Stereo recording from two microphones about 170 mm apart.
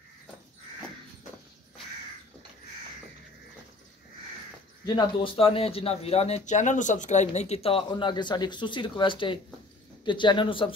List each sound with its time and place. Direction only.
4.8 s speech: 30° left (ahead or behind)